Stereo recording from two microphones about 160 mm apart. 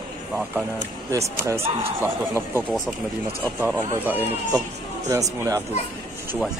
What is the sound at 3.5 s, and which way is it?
Speech, 15° right (ahead or behind).